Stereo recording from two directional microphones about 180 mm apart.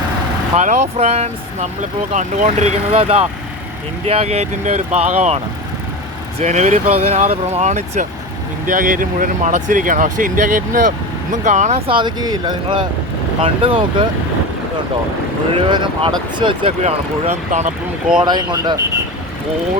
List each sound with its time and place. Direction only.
0.5 s speech: 40° right (ahead or behind)
6.4 s speech: 40° right (ahead or behind)
11.9 s speech: 25° right (ahead or behind)
15.5 s speech: 30° right (ahead or behind)
18.2 s speech: 25° right (ahead or behind)